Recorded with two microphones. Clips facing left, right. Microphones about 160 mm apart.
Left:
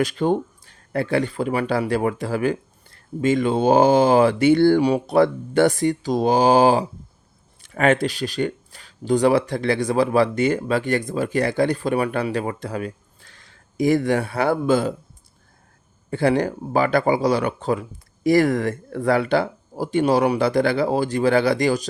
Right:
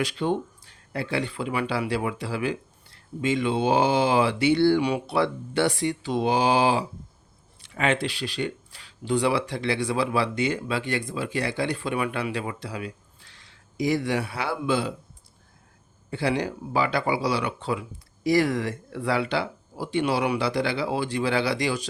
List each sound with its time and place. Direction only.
0.0 s speech: 45° left (ahead or behind)
16.0 s speech: 50° left (ahead or behind)